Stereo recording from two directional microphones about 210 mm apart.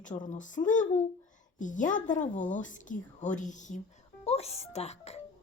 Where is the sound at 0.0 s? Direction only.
35° left (ahead or behind).